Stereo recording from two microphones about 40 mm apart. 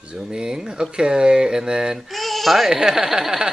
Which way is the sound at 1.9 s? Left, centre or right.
Centre.